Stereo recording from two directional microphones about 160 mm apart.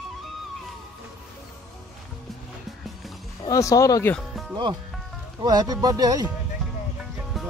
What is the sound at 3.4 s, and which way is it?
Speech, 20° left (ahead or behind).